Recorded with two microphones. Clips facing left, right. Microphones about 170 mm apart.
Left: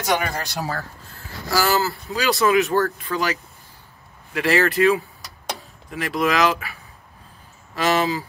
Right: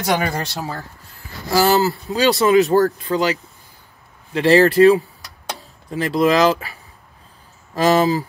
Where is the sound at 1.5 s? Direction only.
20° right (ahead or behind).